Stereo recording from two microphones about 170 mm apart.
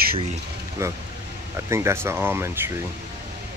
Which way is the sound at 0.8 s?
15° right (ahead or behind).